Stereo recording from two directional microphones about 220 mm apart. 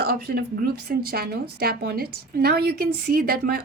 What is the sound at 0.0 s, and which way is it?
A woman's voice, 45° right (ahead or behind).